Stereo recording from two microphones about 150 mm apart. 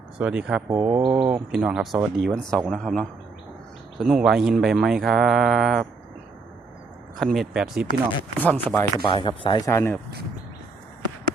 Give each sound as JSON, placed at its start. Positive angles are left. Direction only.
{"t": 0.2, "sound": "speech", "side_deg": -5}
{"t": 0.7, "sound": "mantra", "side_deg": -20}
{"t": 1.2, "sound": "speech", "side_deg": -5}
{"t": 7.2, "sound": "speech", "side_deg": 0}
{"t": 8.4, "sound": "speech", "side_deg": 10}
{"t": 9.0, "sound": "speech", "side_deg": 35}
{"t": 9.6, "sound": "speech", "side_deg": 20}